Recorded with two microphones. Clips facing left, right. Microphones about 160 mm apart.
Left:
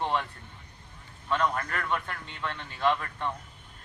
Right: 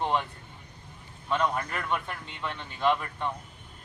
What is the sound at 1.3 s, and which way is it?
A man's voice, 10° right (ahead or behind).